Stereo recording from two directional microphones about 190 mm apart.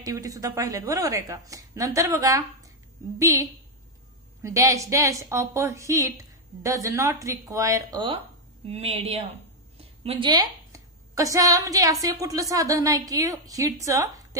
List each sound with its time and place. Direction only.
0.0 s a woman's voice: 20° right (ahead or behind)